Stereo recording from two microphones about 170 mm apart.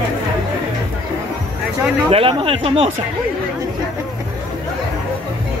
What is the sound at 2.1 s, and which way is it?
Speech, 30° right (ahead or behind).